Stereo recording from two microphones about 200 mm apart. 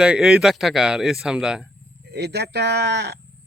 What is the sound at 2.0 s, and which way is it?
Speech, 55° right (ahead or behind).